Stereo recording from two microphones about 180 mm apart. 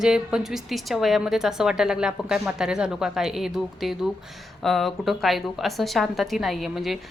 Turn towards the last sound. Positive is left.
turn(degrees=0)  # may be behind; listen again after turning